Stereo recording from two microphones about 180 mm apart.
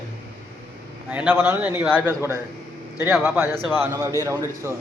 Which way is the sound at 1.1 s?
10° right (ahead or behind).